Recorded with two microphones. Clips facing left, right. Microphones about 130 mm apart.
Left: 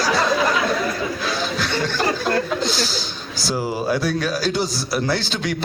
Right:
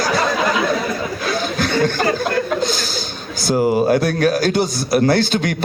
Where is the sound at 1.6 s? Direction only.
50° right (ahead or behind).